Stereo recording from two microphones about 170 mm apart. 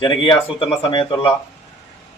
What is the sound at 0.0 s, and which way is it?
Speech, 30° left (ahead or behind).